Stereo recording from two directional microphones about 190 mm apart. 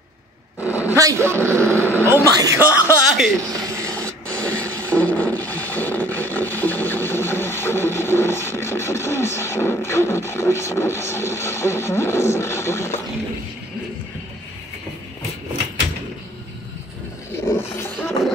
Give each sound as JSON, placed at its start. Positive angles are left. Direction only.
{"t": 0.6, "sound": "roar", "side_deg": 15}
{"t": 0.9, "sound": "a man's voice", "side_deg": -15}
{"t": 3.9, "sound": "a sound", "side_deg": 5}
{"t": 17.5, "sound": "roaring cats", "side_deg": 15}